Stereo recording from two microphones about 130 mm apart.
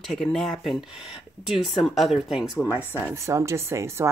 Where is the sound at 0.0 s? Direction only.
Centre (ahead or behind).